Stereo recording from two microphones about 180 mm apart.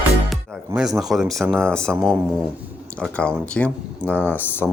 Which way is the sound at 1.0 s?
Centre (ahead or behind).